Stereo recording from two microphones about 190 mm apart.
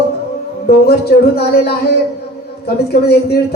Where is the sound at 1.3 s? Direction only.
55° left (ahead or behind).